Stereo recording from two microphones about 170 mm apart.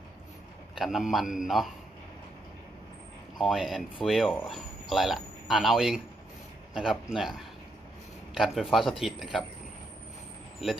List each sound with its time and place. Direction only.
0.7 s speech: centre (ahead or behind)
3.3 s speech: centre (ahead or behind)